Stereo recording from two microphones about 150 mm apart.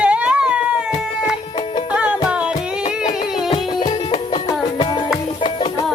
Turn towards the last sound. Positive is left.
turn(degrees=35)  # may be behind; listen again after turning